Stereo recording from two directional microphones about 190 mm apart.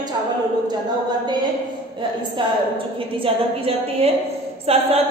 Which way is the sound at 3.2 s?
30° right (ahead or behind).